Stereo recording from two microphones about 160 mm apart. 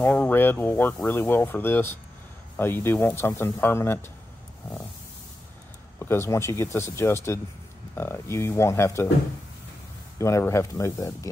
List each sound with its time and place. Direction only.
0.0 s speech: 10° left (ahead or behind)
5.9 s speech: 15° left (ahead or behind)
10.1 s speech: 15° left (ahead or behind)